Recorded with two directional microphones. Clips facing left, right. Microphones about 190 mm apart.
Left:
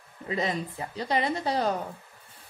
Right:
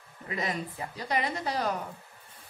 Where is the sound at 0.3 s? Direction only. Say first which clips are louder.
Left 4 dB; 30° left (ahead or behind).